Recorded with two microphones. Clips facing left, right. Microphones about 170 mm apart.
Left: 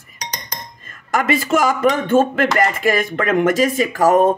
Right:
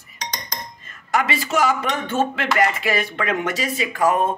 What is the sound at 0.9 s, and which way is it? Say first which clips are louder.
A man's voice: left 4 dB; 50° left (ahead or behind).